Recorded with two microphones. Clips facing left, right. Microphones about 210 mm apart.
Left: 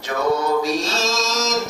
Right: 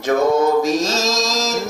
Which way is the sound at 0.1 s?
50° right (ahead or behind).